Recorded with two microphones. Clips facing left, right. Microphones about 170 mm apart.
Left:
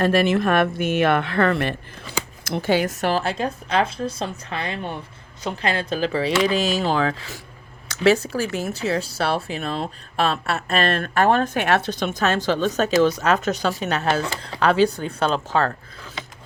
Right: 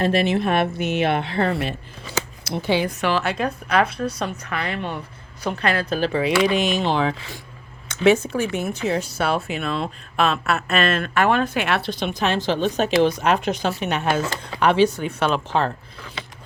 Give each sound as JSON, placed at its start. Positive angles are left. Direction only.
{"t": 0.0, "sound": "speech", "side_deg": 50}
{"t": 2.4, "sound": "speech", "side_deg": 50}
{"t": 5.8, "sound": "speech", "side_deg": -35}
{"t": 6.1, "sound": "speech", "side_deg": 30}